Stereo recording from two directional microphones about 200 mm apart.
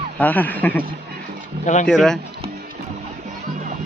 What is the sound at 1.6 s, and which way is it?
Speech, 35° left (ahead or behind).